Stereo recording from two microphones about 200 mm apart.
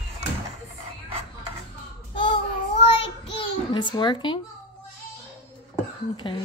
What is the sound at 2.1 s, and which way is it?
Child singing, 25° left (ahead or behind).